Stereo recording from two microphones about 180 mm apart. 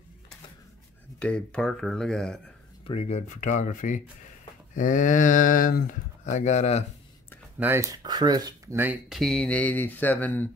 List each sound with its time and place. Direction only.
1.2 s speech: 5° left (ahead or behind)
2.9 s speech: 35° left (ahead or behind)
7.5 s speech: 10° right (ahead or behind)
8.0 s speech: 25° right (ahead or behind)
8.7 s speech: 10° right (ahead or behind); by 10.5 s 10° left (ahead or behind)